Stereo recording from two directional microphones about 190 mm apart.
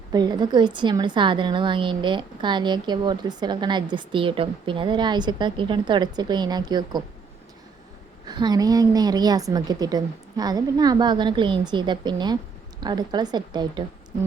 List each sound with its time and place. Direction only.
0.1 s a woman's voice: 20° right (ahead or behind)
8.3 s a woman's voice: 20° right (ahead or behind)